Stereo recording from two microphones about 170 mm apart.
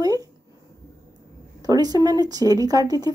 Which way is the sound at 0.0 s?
20° right (ahead or behind).